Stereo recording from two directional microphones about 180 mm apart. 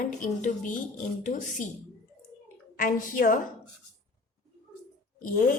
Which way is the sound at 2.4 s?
50° left (ahead or behind).